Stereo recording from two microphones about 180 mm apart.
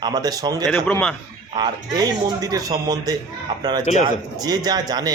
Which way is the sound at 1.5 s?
25° right (ahead or behind).